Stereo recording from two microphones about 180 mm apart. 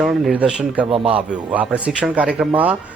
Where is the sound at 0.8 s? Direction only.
30° right (ahead or behind).